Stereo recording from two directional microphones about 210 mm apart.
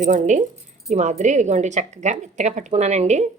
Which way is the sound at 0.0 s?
35° right (ahead or behind).